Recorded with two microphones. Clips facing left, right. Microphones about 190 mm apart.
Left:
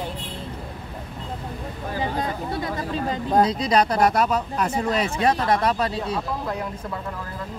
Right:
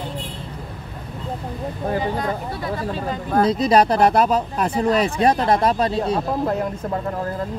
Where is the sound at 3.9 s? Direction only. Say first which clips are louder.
Right 4 dB; 30° right (ahead or behind).